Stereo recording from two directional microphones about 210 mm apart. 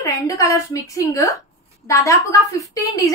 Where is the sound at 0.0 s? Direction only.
15° left (ahead or behind).